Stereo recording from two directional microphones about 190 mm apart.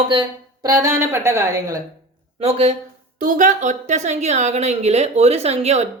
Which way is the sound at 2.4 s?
35° right (ahead or behind).